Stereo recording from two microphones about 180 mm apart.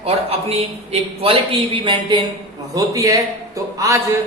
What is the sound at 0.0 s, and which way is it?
A man's voice, 35° right (ahead or behind).